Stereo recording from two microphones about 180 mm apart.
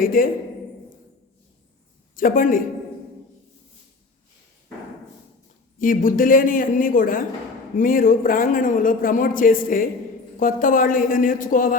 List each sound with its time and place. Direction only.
0.0 s a man's voice: 50° left (ahead or behind)
2.1 s a man's voice: 50° left (ahead or behind)
5.8 s a man's voice: 50° left (ahead or behind)